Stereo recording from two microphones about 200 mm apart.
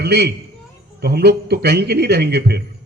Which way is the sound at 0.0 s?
55° right (ahead or behind).